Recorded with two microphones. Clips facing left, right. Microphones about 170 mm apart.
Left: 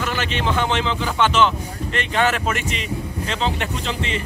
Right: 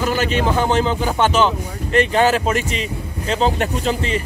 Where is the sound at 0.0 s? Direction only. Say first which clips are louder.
Right 5 dB; 40° right (ahead or behind).